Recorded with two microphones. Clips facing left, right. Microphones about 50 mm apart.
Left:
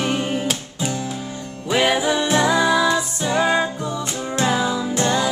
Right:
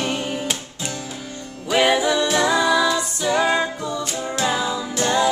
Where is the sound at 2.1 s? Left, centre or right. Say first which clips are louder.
Left 1 dB; centre.